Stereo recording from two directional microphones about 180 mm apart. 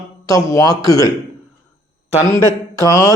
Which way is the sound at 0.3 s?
20° left (ahead or behind).